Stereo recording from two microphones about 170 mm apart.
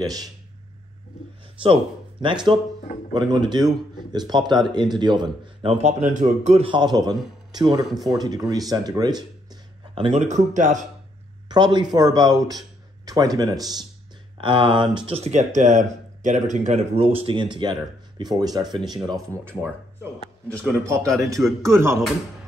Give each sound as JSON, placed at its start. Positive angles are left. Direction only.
{"t": 0.0, "sound": "a man's voice", "side_deg": -20}
{"t": 2.2, "sound": "a man's voice", "side_deg": -25}
{"t": 10.2, "sound": "speech", "side_deg": -45}
{"t": 11.4, "sound": "a man's voice", "side_deg": -25}
{"t": 20.8, "sound": "speech", "side_deg": -15}